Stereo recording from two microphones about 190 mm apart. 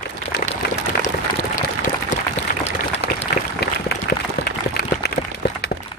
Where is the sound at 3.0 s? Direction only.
55° left (ahead or behind).